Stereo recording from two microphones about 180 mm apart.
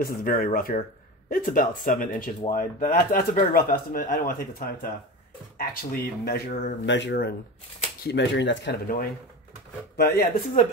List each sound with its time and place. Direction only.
0.0 s speech: 55° left (ahead or behind); by 8.7 s 85° left
9.9 s speech: 55° left (ahead or behind)